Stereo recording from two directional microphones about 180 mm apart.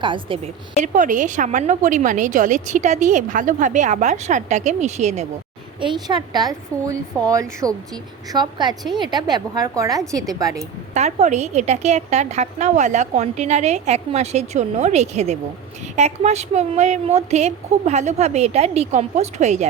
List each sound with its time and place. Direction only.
0.0 s a woman's voice: 30° right (ahead or behind)
0.8 s a woman's voice: 45° right (ahead or behind)
5.8 s a woman's voice: 25° right (ahead or behind)
10.9 s a woman's voice: 40° right (ahead or behind)